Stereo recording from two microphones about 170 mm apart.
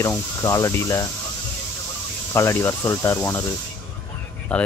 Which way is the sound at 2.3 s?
15° left (ahead or behind).